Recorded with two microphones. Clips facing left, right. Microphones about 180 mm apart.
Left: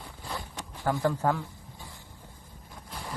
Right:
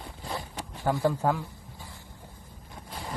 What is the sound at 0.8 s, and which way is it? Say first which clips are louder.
Speech: right 1 dB; 15° right (ahead or behind).